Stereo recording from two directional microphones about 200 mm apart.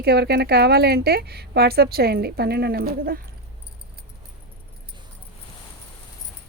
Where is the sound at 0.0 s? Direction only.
55° right (ahead or behind).